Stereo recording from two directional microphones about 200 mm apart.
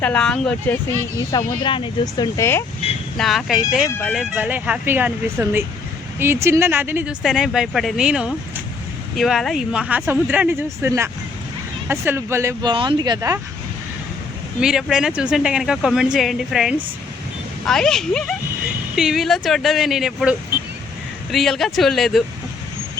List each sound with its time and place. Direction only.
0.0 s speech: 5° left (ahead or behind)
1.3 s speech: 20° left (ahead or behind)
3.2 s speech: centre (ahead or behind)
12.7 s speech: 25° right (ahead or behind)
14.6 s speech: 5° right (ahead or behind)
21.3 s speech: centre (ahead or behind)